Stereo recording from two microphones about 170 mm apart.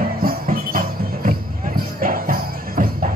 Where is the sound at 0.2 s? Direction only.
60° right (ahead or behind).